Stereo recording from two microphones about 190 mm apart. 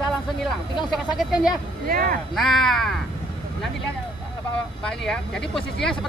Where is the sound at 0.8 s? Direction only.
Centre (ahead or behind).